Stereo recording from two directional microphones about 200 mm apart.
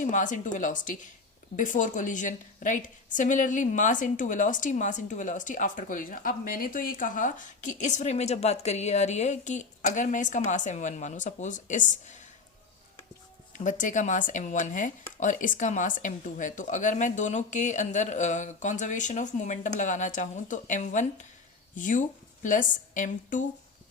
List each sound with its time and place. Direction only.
0.0 s a woman's voice: 40° left (ahead or behind)
13.5 s a woman's voice: 40° left (ahead or behind)